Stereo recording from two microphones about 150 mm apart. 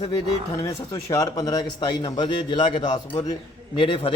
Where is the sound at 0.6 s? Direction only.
20° left (ahead or behind).